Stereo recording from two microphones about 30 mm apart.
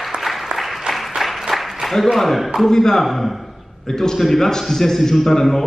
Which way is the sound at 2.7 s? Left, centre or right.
Centre.